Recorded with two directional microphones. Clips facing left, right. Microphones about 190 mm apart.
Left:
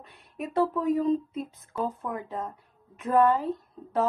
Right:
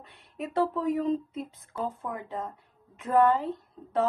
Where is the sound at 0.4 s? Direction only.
25° right (ahead or behind).